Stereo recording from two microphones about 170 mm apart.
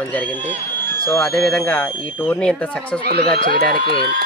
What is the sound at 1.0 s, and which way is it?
Speech, 10° left (ahead or behind).